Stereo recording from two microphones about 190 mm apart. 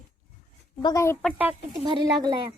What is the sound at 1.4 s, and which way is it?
Speech, 10° right (ahead or behind).